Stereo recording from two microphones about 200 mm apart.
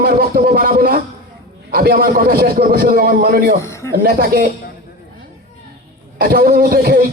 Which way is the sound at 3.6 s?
15° left (ahead or behind).